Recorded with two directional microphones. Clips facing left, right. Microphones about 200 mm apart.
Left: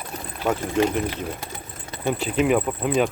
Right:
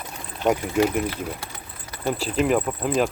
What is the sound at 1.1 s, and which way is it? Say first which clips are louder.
Sewing machine: left 1 dB; 20° left (ahead or behind).